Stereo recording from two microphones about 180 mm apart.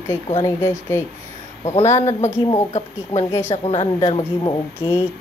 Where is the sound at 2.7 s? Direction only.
40° left (ahead or behind).